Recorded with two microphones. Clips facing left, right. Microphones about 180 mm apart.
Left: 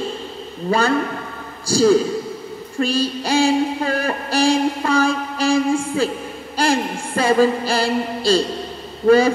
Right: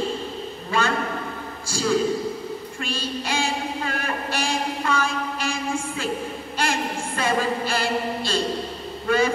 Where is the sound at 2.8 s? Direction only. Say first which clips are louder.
Left 11 dB; 35° left (ahead or behind).